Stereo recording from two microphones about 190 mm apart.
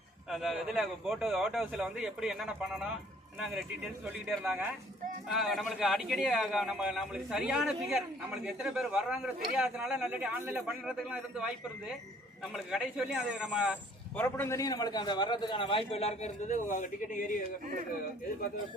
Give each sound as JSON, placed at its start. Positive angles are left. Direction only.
{"t": 0.3, "sound": "speech", "side_deg": 0}
{"t": 4.3, "sound": "speech", "side_deg": -5}
{"t": 12.5, "sound": "speech", "side_deg": 0}
{"t": 14.2, "sound": "a man's voice", "side_deg": 10}